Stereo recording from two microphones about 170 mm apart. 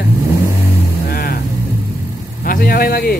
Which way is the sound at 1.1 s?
65° left (ahead or behind).